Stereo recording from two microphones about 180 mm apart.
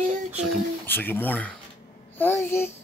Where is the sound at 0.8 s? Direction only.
10° left (ahead or behind).